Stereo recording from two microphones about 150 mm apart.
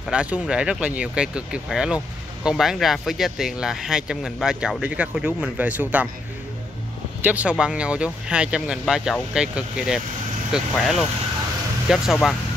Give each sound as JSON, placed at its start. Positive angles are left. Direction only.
{"t": 0.1, "sound": "speech", "side_deg": -5}
{"t": 7.2, "sound": "speech", "side_deg": -10}